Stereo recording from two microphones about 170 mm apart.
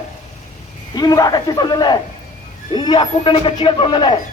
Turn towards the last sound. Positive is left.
turn(degrees=30)  # may be behind; listen again after turning